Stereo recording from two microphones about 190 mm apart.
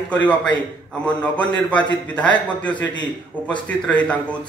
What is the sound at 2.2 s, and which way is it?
Speech, 5° left (ahead or behind).